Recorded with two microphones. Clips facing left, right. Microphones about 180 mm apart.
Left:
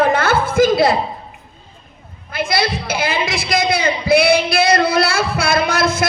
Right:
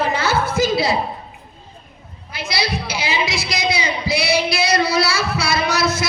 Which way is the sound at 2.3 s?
55° left (ahead or behind).